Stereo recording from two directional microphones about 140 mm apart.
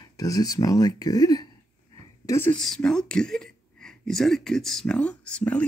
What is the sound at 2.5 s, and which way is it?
Speech, 5° left (ahead or behind).